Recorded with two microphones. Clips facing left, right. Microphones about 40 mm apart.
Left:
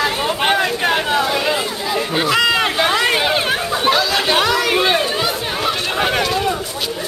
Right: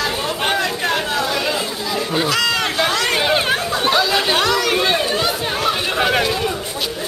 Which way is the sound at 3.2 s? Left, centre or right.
Centre.